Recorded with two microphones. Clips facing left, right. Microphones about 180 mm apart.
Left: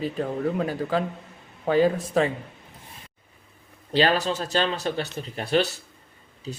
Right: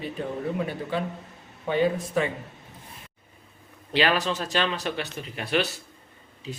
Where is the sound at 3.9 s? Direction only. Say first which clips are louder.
Left 2 dB; 35° left (ahead or behind).